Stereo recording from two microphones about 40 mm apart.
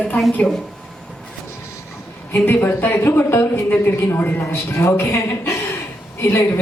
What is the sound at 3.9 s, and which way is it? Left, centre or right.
Speech, left.